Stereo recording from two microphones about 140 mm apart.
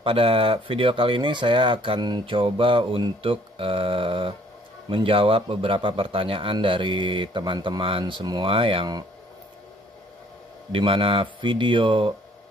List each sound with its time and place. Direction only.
0.0 s speech: 40° right (ahead or behind)
10.7 s speech: 40° right (ahead or behind)